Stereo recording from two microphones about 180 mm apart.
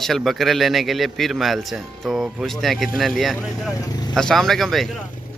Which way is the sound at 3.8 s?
20° left (ahead or behind).